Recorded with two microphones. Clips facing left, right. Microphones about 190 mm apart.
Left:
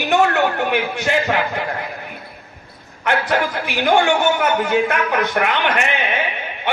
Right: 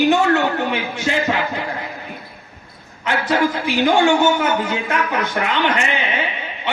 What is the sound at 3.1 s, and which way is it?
A woman's voice, 60° left (ahead or behind).